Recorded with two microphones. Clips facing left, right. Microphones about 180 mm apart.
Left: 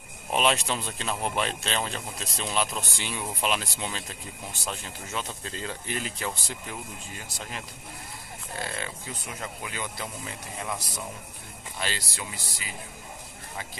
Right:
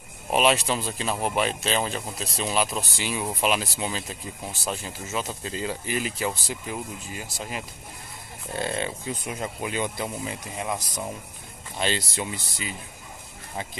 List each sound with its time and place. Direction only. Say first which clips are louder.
0.3 s speech: right 4 dB; 5° right (ahead or behind)
8.5 s speech: right 7 dB; 25° right (ahead or behind)
11.8 s speech: right 7 dB; 20° right (ahead or behind)